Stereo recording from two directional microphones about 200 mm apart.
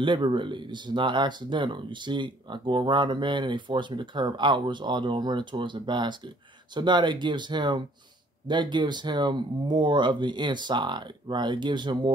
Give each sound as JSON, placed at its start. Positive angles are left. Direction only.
{"t": 0.0, "sound": "speech", "side_deg": -25}